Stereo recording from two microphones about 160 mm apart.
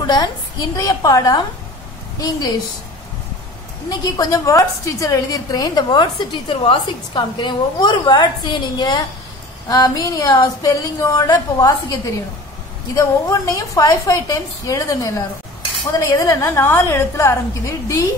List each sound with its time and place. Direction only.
0.0 s a woman's voice: 25° left (ahead or behind)
3.9 s a woman's voice: 25° left (ahead or behind)